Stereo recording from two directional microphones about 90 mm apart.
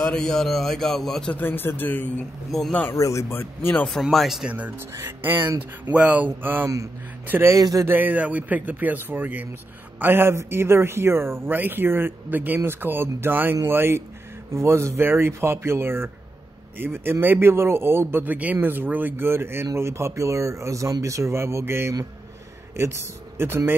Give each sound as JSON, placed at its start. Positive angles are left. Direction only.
{"t": 0.0, "sound": "a man's voice", "side_deg": 10}
{"t": 1.3, "sound": "speech", "side_deg": 25}
{"t": 2.5, "sound": "a man's voice", "side_deg": 5}
{"t": 2.9, "sound": "speech", "side_deg": 35}
{"t": 4.0, "sound": "a man's voice", "side_deg": 0}
{"t": 4.5, "sound": "speech", "side_deg": -20}
{"t": 7.5, "sound": "speech", "side_deg": -40}
{"t": 7.9, "sound": "speech", "side_deg": -20}